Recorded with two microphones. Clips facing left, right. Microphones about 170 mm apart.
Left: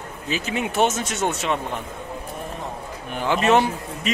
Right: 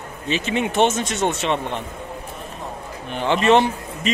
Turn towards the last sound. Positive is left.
turn(degrees=5)  # may be behind; listen again after turning